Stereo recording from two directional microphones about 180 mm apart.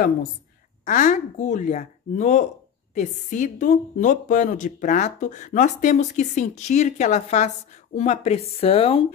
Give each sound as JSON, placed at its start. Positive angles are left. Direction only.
{"t": 0.8, "sound": "a woman's voice", "side_deg": 45}